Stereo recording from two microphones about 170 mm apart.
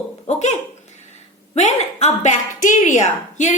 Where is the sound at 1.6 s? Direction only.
40° left (ahead or behind).